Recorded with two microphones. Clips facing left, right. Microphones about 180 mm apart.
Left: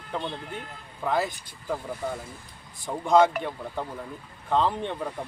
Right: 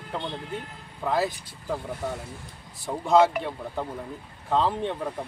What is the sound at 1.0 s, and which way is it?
Speech, centre (ahead or behind).